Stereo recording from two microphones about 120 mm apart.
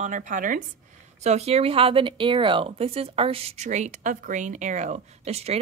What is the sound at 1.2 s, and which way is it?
Speech, 60° right (ahead or behind).